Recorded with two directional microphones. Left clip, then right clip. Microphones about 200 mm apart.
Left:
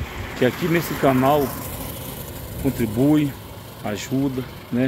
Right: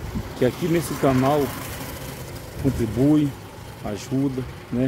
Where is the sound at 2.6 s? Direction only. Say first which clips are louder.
Left 1 dB; centre (ahead or behind).